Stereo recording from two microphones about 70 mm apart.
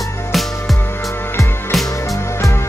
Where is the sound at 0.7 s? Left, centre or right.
Left.